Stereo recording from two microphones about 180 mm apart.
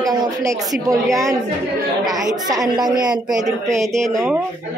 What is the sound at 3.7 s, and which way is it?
Speech, centre (ahead or behind).